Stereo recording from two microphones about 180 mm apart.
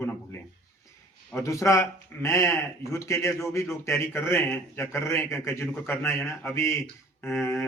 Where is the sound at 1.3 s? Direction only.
15° left (ahead or behind).